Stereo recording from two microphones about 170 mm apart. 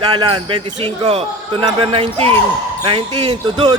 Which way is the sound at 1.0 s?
40° right (ahead or behind).